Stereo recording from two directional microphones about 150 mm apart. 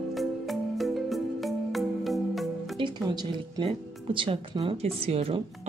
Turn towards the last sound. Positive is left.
turn(degrees=-40)  # may be behind; listen again after turning